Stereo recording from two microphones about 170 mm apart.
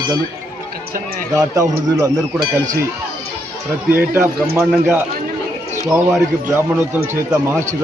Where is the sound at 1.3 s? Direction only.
20° right (ahead or behind).